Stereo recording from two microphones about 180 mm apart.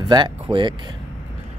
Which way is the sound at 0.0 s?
25° right (ahead or behind).